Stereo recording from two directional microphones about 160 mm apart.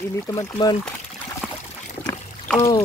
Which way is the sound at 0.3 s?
25° left (ahead or behind).